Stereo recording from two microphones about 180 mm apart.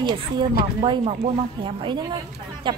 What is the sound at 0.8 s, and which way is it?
Speech, 30° right (ahead or behind).